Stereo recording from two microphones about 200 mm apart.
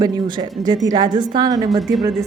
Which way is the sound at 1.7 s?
Centre (ahead or behind).